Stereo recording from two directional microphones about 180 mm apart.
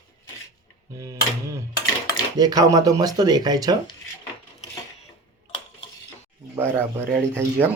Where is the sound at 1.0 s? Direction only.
15° right (ahead or behind).